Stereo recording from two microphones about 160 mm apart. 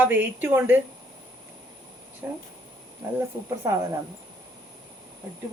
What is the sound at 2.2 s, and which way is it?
Speech, 10° right (ahead or behind).